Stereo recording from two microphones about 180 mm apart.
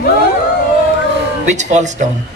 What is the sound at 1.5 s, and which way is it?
Speech, 40° right (ahead or behind).